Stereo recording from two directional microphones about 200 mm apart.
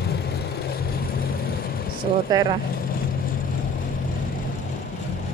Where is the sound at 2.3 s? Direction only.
20° right (ahead or behind).